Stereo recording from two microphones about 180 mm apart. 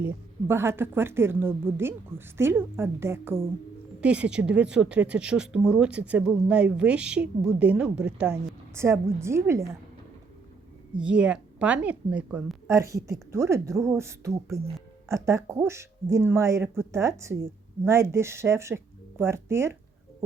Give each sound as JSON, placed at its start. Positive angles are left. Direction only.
{"t": 0.0, "sound": "speech", "side_deg": -15}
{"t": 11.0, "sound": "speech", "side_deg": -5}